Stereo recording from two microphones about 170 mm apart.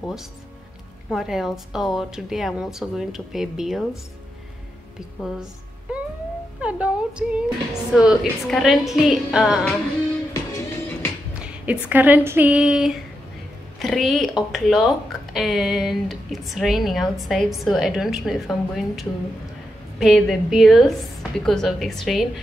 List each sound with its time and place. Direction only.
1.1 s a woman's voice: centre (ahead or behind)
6.6 s a woman's voice: 5° right (ahead or behind)
10.3 s music: 20° left (ahead or behind)
11.6 s a woman's voice: 10° right (ahead or behind)